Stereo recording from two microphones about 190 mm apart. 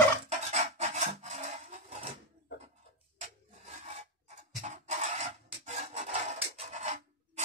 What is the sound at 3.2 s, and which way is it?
Filing, 35° right (ahead or behind).